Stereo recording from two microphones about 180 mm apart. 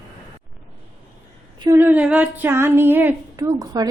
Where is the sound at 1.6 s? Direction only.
15° right (ahead or behind).